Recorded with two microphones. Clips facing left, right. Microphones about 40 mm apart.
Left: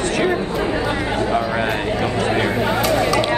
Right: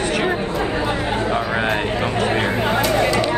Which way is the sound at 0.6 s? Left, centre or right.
Right.